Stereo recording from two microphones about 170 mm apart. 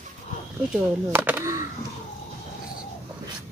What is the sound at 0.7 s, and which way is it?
Speech, 10° right (ahead or behind).